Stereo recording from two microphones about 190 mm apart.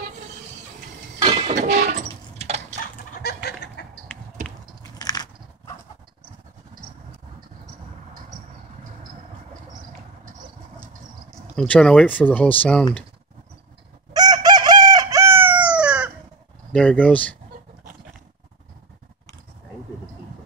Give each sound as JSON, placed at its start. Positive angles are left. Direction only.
{"t": 1.5, "sound": "train", "side_deg": -40}
{"t": 3.2, "sound": "chicken", "side_deg": 60}
{"t": 3.8, "sound": "a sound", "side_deg": 60}
{"t": 4.9, "sound": "biting", "side_deg": 20}
{"t": 11.5, "sound": "speech", "side_deg": 5}
{"t": 14.1, "sound": "chicken", "side_deg": -20}
{"t": 16.7, "sound": "speech", "side_deg": 5}